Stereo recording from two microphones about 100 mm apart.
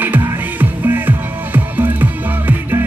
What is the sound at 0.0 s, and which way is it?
Music, 20° right (ahead or behind).